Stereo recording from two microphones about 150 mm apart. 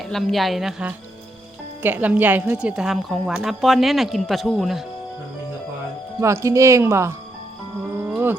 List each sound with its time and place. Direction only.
0.1 s speech: centre (ahead or behind)
6.1 s speech: 20° right (ahead or behind)
8.1 s a sound: 15° right (ahead or behind)